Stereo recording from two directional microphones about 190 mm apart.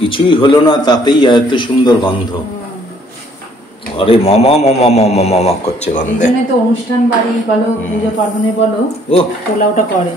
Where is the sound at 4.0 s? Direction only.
30° left (ahead or behind).